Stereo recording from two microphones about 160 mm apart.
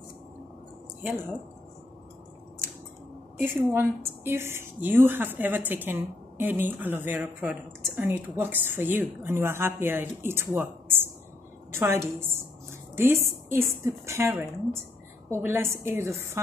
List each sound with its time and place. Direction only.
3.3 s a woman's voice: 15° right (ahead or behind)